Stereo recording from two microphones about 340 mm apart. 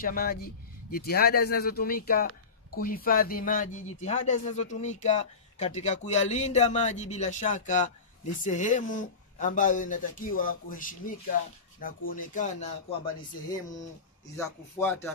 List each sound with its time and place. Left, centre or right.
0.0 s speech: left
14.3 s speech: centre